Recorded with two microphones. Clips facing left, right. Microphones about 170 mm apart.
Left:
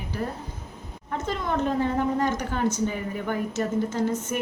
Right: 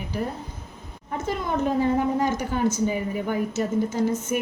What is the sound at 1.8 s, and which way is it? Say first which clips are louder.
A woman's voice: right 2 dB; 10° right (ahead or behind).